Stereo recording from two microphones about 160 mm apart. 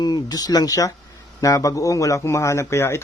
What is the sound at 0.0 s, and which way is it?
Speech, 25° left (ahead or behind).